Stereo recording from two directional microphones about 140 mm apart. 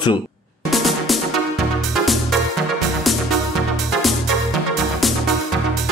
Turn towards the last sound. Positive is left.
turn(degrees=0)  # may be behind; listen again after turning